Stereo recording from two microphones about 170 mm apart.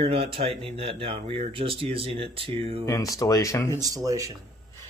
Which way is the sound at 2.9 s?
20° left (ahead or behind).